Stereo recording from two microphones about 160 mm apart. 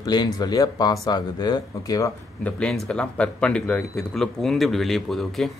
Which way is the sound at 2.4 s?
5° left (ahead or behind).